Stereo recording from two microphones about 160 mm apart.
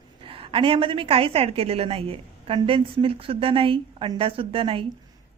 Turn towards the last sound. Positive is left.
turn(degrees=-35)  # may be behind; listen again after turning